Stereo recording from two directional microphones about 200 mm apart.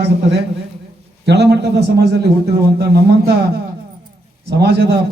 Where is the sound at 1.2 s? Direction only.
55° right (ahead or behind).